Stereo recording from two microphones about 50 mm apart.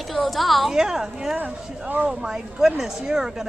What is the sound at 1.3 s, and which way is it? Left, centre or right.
Speech, right.